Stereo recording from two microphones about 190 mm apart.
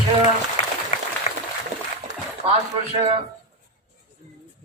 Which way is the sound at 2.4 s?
30° right (ahead or behind).